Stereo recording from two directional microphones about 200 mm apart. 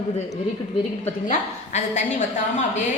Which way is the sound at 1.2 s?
35° left (ahead or behind).